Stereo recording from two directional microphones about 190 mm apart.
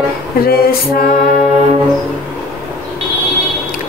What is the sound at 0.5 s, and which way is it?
Speech, 50° left (ahead or behind).